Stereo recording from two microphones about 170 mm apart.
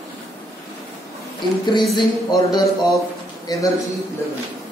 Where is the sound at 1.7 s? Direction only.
25° left (ahead or behind).